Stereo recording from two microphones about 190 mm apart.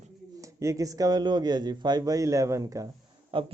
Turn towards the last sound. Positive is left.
turn(degrees=-25)  # may be behind; listen again after turning